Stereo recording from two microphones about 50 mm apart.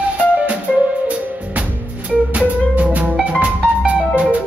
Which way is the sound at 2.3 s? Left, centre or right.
Right.